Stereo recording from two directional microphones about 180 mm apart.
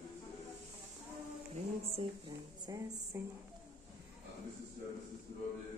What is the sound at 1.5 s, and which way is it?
Music, 35° right (ahead or behind).